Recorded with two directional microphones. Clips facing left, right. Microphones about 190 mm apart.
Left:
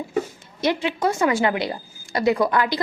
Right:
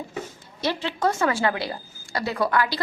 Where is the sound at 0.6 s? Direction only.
15° left (ahead or behind).